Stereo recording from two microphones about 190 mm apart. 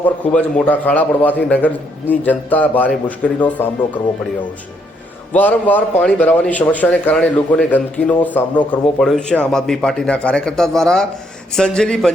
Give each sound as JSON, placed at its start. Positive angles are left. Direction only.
{"t": 0.0, "sound": "a man's voice", "side_deg": 5}
{"t": 5.3, "sound": "a man's voice", "side_deg": 10}